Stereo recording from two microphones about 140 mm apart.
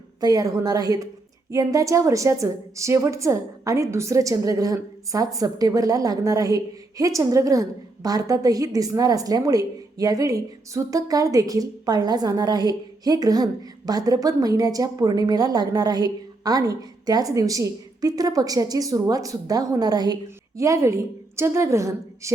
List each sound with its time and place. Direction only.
0.2 s a woman's voice: 25° right (ahead or behind)